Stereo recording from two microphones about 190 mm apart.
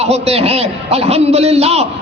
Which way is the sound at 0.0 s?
35° right (ahead or behind).